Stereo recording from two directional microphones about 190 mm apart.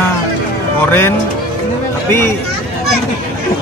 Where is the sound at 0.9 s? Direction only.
10° left (ahead or behind).